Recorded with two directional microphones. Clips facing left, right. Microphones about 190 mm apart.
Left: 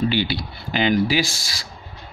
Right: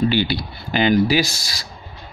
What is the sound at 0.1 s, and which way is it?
Speech, 45° right (ahead or behind).